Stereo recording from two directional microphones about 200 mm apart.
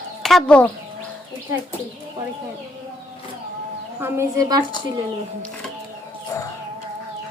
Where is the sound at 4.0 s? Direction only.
15° right (ahead or behind).